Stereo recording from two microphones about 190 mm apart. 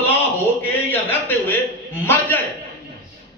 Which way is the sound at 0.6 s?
10° left (ahead or behind).